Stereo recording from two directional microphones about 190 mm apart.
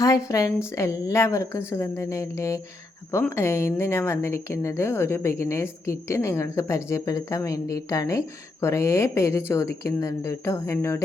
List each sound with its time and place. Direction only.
0.0 s a woman's voice: 15° left (ahead or behind)